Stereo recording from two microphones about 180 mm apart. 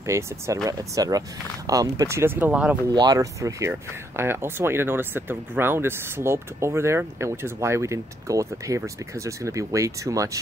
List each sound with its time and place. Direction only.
0.0 s speech: 15° right (ahead or behind)
2.9 s speech: 20° right (ahead or behind)